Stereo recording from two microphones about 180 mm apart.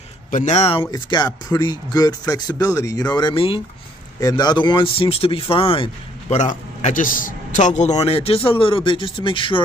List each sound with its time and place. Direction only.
0.3 s speech: 40° left (ahead or behind)
6.3 s a man's voice: 40° left (ahead or behind)